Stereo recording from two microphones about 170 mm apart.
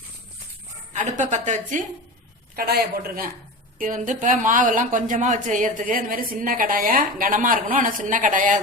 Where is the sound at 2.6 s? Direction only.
65° right (ahead or behind).